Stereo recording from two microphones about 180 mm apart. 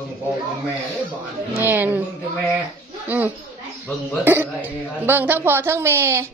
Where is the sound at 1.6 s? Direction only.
10° right (ahead or behind).